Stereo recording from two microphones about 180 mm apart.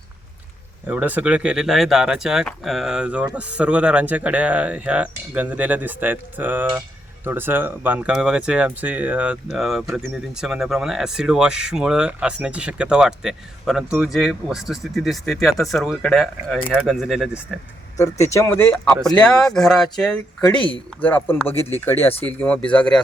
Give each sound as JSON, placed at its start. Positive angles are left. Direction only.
{"t": 0.9, "sound": "speech", "side_deg": -10}
{"t": 17.9, "sound": "speech", "side_deg": 15}
{"t": 19.0, "sound": "speech", "side_deg": 5}